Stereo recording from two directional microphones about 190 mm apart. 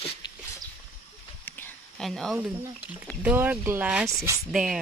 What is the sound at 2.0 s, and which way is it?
Speech, centre (ahead or behind).